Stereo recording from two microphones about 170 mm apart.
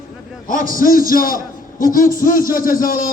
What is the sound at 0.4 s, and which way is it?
A man's voice, 55° left (ahead or behind).